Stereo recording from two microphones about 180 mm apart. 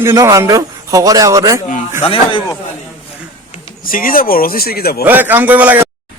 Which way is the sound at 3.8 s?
50° left (ahead or behind).